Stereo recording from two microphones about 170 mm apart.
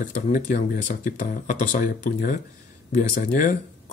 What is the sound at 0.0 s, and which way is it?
Speech, 50° left (ahead or behind).